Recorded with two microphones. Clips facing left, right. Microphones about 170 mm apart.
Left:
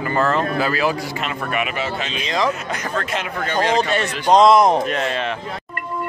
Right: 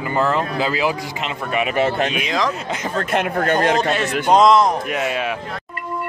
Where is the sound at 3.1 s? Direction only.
50° right (ahead or behind).